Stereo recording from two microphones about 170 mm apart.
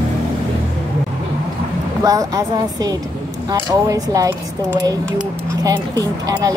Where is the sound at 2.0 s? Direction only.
20° right (ahead or behind).